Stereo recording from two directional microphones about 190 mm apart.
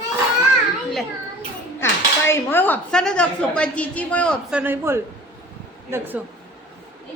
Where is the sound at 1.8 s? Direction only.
15° left (ahead or behind).